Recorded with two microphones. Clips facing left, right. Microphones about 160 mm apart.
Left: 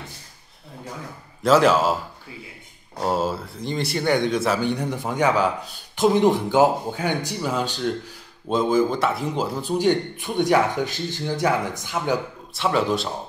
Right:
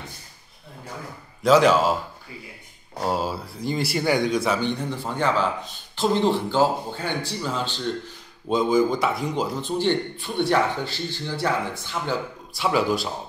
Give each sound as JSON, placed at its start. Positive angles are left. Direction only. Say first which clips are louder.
{"t": 1.4, "sound": "speech", "louder": "even", "side_deg": 0}
{"t": 3.0, "sound": "speech", "louder": "left 2 dB", "side_deg": 0}
{"t": 4.7, "sound": "speech", "louder": "left 3 dB", "side_deg": 15}
{"t": 8.5, "sound": "speech", "louder": "even", "side_deg": 0}
{"t": 12.5, "sound": "speech", "louder": "left 1 dB", "side_deg": -5}